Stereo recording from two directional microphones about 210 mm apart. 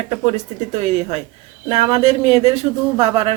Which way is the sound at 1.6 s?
25° right (ahead or behind).